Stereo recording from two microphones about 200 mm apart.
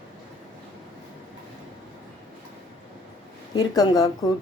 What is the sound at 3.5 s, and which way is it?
Speech, 20° left (ahead or behind).